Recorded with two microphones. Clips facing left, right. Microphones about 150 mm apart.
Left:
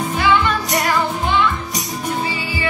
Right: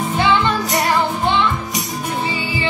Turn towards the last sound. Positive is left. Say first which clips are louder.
# right 1 dB
turn(degrees=-25)  # may be behind; listen again after turning